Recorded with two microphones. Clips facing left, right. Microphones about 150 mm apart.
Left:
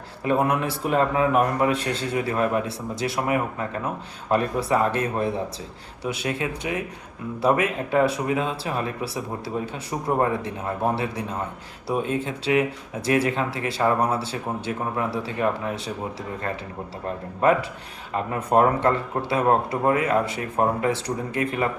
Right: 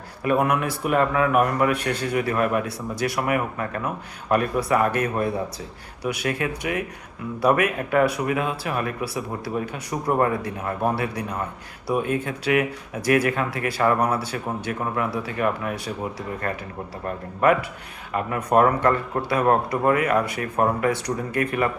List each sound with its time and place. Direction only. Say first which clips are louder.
0.3 s speech: right 1 dB; 30° left (ahead or behind)
17.4 s speech: right 1 dB; 30° left (ahead or behind)